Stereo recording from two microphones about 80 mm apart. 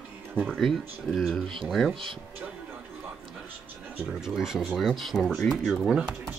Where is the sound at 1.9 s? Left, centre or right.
Right.